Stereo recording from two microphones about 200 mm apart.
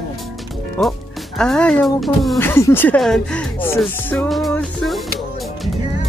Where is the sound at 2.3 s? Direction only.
15° left (ahead or behind).